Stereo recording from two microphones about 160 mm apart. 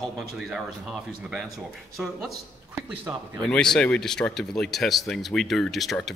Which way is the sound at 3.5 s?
5° left (ahead or behind).